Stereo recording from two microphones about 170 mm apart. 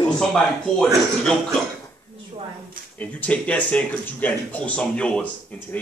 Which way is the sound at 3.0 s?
10° left (ahead or behind).